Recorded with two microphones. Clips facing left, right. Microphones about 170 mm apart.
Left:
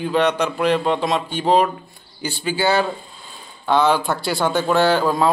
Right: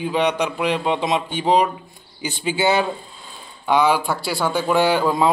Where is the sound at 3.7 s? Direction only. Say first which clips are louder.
Even; 10° right (ahead or behind).